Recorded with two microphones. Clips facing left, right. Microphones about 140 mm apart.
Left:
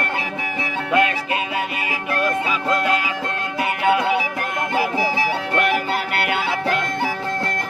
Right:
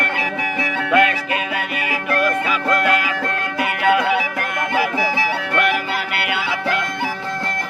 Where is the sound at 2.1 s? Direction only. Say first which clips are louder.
Right 2 dB; 25° left (ahead or behind).